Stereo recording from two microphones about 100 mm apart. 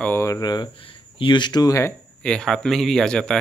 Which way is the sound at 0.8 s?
60° left (ahead or behind).